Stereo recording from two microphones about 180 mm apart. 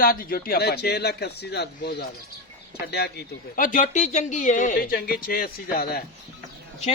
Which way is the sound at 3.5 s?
45° left (ahead or behind).